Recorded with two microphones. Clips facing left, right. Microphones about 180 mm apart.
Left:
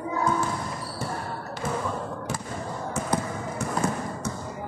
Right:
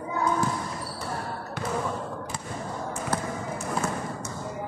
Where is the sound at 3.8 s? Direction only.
15° left (ahead or behind).